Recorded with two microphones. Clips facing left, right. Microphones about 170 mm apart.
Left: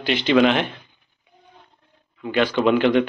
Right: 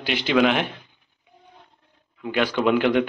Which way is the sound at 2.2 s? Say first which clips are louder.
Left 2 dB; 10° right (ahead or behind).